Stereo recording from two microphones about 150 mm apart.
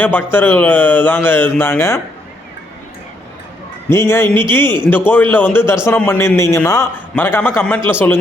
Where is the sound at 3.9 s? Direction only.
15° left (ahead or behind).